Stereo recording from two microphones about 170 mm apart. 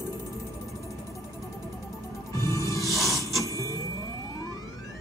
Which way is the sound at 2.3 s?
20° left (ahead or behind).